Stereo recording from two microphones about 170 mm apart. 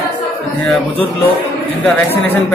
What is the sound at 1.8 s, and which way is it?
Speech, 10° left (ahead or behind).